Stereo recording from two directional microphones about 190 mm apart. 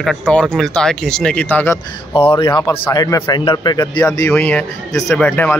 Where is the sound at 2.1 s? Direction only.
25° left (ahead or behind).